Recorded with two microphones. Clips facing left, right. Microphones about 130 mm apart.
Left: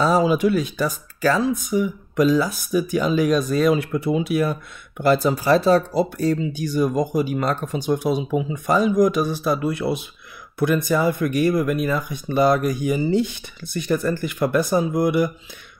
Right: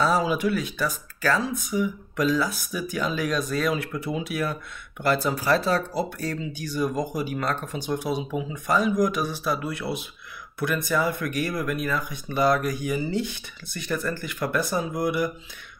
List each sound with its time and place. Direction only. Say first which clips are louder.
0.0 s speech: left 5 dB; 25° left (ahead or behind)